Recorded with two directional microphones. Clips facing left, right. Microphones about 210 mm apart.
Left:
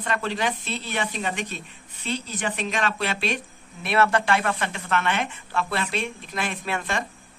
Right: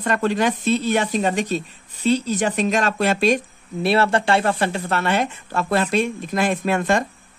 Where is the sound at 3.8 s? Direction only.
30° right (ahead or behind).